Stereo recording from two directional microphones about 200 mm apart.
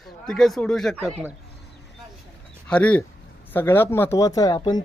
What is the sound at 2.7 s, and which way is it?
Speech, 5° left (ahead or behind).